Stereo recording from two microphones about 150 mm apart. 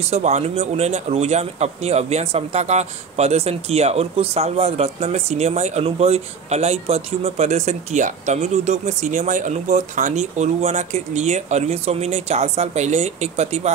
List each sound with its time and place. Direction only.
0.0 s speech: 45° right (ahead or behind)